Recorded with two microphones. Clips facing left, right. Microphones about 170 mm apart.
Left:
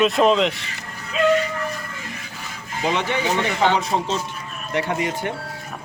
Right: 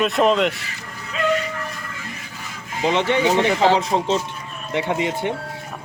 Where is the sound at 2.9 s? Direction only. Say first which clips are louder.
Right 5 dB; 25° right (ahead or behind).